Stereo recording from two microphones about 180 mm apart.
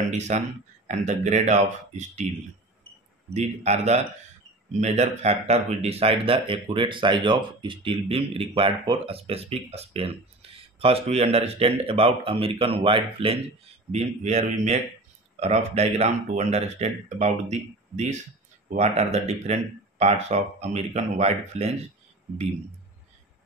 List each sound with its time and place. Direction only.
0.3 s speech: 40° right (ahead or behind)
3.3 s speech: 40° right (ahead or behind)